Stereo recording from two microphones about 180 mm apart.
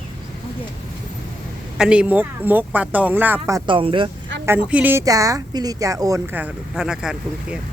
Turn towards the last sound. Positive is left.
turn(degrees=-5)  # may be behind; listen again after turning